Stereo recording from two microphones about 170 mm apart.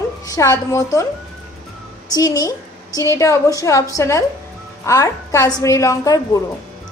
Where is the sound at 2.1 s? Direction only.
20° left (ahead or behind).